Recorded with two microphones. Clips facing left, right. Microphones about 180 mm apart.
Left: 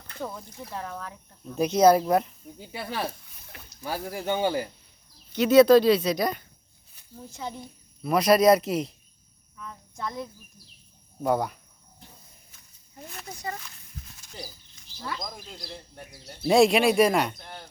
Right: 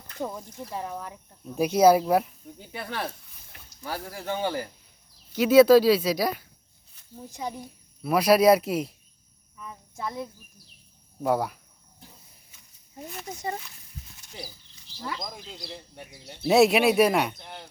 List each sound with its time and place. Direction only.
0.2 s speech: 15° right (ahead or behind)
2.7 s speech: 5° left (ahead or behind)
3.8 s speech: 20° left (ahead or behind)
5.3 s a child's voice: 5° right (ahead or behind)
13.2 s speech: 20° right (ahead or behind)
14.9 s speech: 15° right (ahead or behind)
15.4 s speech: centre (ahead or behind)